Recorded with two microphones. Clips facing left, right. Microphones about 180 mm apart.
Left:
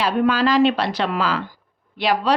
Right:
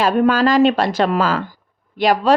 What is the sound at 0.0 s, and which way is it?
Speech, 45° right (ahead or behind).